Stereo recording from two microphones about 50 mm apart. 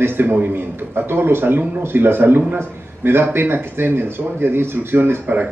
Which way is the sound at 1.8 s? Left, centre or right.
Right.